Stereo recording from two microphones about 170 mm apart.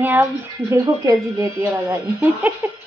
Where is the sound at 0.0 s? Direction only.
15° right (ahead or behind).